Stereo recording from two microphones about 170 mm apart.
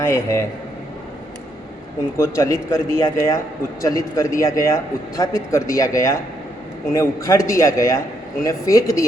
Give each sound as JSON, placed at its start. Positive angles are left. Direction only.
{"t": 0.0, "sound": "a man's voice", "side_deg": 15}
{"t": 2.1, "sound": "a man's voice", "side_deg": 15}